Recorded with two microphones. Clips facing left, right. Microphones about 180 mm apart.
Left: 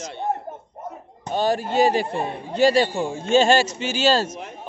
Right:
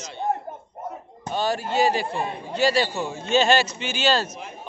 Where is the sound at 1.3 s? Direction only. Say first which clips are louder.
Left 3 dB; 45° left (ahead or behind).